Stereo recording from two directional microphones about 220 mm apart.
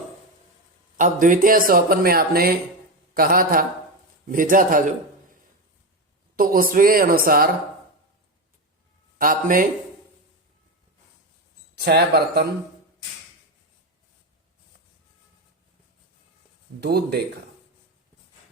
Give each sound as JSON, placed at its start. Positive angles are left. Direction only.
{"t": 0.9, "sound": "a man's voice", "side_deg": -35}
{"t": 9.1, "sound": "speech", "side_deg": -40}
{"t": 11.7, "sound": "speech", "side_deg": -50}
{"t": 16.8, "sound": "speech", "side_deg": -45}